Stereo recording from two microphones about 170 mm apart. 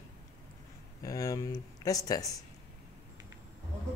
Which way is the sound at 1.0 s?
20° left (ahead or behind).